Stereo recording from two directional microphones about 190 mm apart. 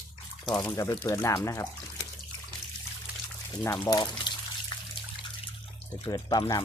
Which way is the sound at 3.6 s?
15° left (ahead or behind).